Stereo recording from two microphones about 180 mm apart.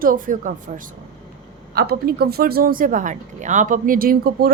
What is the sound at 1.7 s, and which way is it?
A woman's voice, 60° right (ahead or behind).